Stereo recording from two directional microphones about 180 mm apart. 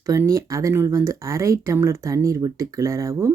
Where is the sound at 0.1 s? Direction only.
15° right (ahead or behind).